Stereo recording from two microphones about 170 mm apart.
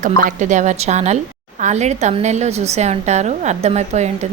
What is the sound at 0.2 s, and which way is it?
A woman's voice, 50° right (ahead or behind).